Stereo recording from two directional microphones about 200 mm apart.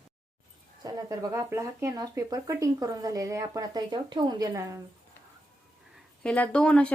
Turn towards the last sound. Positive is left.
turn(degrees=5)  # may be behind; listen again after turning